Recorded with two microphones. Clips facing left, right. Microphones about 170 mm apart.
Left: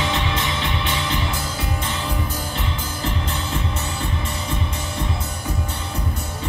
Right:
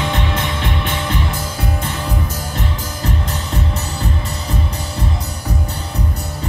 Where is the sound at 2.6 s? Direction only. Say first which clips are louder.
Right 3 dB; 40° right (ahead or behind).